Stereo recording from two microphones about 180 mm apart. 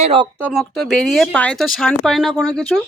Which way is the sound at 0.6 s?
Centre (ahead or behind).